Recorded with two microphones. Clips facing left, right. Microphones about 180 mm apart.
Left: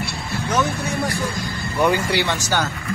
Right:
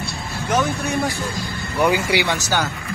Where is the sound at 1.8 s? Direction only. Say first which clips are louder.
Right 1 dB; 10° right (ahead or behind).